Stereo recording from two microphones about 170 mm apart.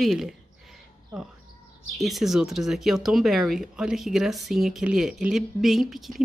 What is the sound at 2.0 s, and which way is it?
Speech, centre (ahead or behind).